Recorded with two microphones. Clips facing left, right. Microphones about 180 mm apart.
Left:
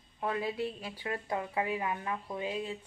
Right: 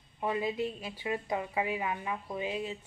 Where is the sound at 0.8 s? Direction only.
10° right (ahead or behind).